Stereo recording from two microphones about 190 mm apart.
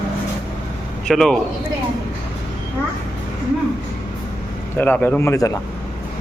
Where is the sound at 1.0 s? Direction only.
Centre (ahead or behind).